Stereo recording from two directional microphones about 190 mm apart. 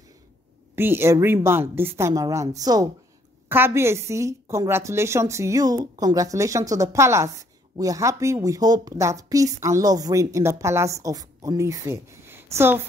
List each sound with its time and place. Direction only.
0.7 s a woman's voice: 10° right (ahead or behind)